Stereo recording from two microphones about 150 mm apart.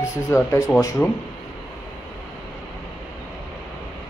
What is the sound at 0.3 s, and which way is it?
Speech, 20° left (ahead or behind).